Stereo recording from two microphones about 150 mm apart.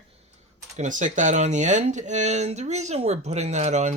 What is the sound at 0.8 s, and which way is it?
Speech, 55° right (ahead or behind).